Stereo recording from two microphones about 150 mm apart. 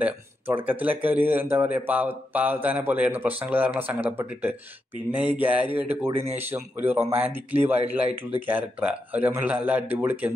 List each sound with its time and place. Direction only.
0.7 s speech: 10° right (ahead or behind)